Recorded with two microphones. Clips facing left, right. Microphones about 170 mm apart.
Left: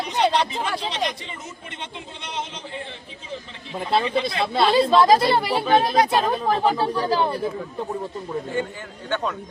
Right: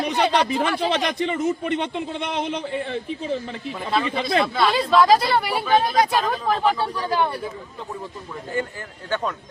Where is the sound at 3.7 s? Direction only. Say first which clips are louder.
Left 3 dB; 25° left (ahead or behind).